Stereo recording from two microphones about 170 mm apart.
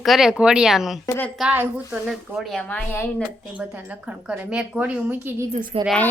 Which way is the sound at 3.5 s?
10° right (ahead or behind).